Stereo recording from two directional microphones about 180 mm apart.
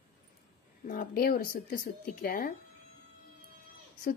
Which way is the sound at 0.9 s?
50° left (ahead or behind).